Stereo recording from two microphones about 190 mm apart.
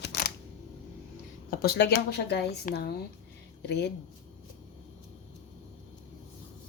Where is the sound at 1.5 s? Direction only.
60° left (ahead or behind).